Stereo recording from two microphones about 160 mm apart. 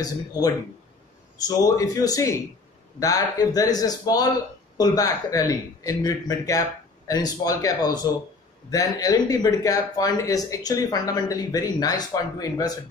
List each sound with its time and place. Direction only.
0.0 s speech: 25° left (ahead or behind)
1.6 s speech: 20° left (ahead or behind)